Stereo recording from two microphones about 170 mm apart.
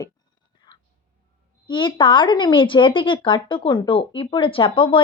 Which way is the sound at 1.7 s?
30° left (ahead or behind).